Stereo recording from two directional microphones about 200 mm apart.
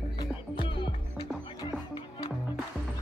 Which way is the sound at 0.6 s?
25° left (ahead or behind).